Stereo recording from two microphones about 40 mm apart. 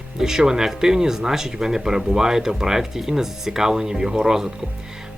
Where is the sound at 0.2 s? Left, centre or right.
Centre.